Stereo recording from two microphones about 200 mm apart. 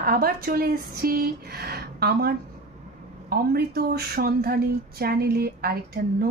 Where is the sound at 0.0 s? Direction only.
50° right (ahead or behind).